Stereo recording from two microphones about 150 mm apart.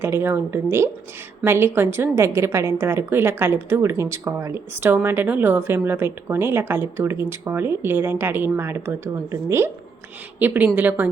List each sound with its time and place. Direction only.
0.0 s a woman's voice: 15° right (ahead or behind)